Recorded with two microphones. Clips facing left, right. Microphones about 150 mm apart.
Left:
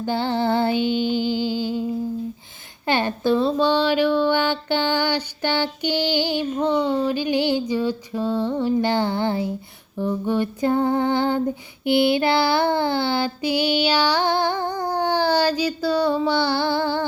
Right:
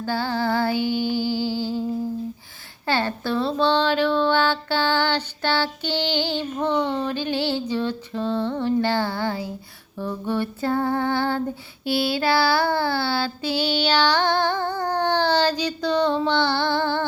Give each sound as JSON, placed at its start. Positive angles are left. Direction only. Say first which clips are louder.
{"t": 0.0, "sound": "music", "louder": "left 2 dB", "side_deg": 20}
{"t": 2.8, "sound": "speech", "louder": "left 3 dB", "side_deg": 20}
{"t": 10.0, "sound": "child singing", "louder": "left 3 dB", "side_deg": 15}